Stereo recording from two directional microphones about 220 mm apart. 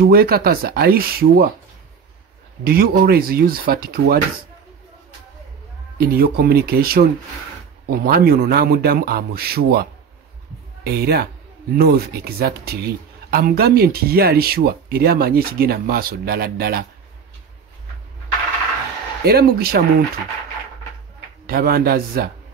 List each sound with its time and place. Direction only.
0.0 s speech: 45° right (ahead or behind)
2.6 s speech: 45° right (ahead or behind)
5.9 s speech: 45° right (ahead or behind)
19.2 s speech: 45° right (ahead or behind)
21.5 s speech: 40° right (ahead or behind)